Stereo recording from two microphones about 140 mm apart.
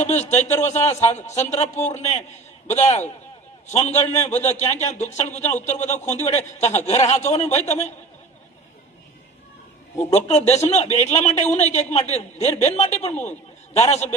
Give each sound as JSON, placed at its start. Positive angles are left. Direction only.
{"t": 0.0, "sound": "a man's voice", "side_deg": 55}
{"t": 10.0, "sound": "a man's voice", "side_deg": 50}